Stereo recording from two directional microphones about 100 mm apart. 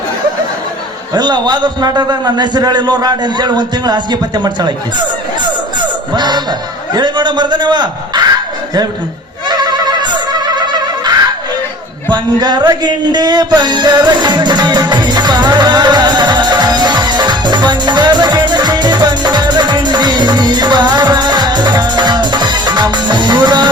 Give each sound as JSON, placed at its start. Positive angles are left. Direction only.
{"t": 1.1, "sound": "a man's voice", "side_deg": -45}
{"t": 6.1, "sound": "a man's voice", "side_deg": -45}
{"t": 9.5, "sound": "neigh", "side_deg": -45}
{"t": 10.4, "sound": "music", "side_deg": -45}